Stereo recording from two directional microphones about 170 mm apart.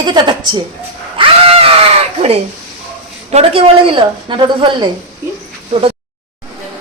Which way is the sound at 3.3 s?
35° right (ahead or behind).